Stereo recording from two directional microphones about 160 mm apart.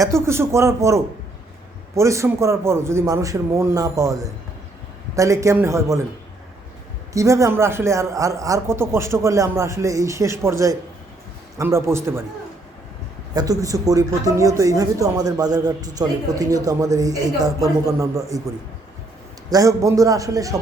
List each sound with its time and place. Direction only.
0.0 s speech: 15° right (ahead or behind)
7.1 s speech: 20° right (ahead or behind)
13.3 s speech: 20° right (ahead or behind)
19.5 s speech: 20° right (ahead or behind)